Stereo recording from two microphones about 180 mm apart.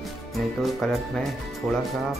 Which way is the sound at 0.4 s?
Centre (ahead or behind).